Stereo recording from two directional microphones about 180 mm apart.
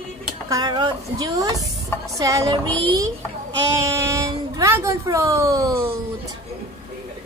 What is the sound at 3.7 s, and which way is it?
Speech, 15° right (ahead or behind).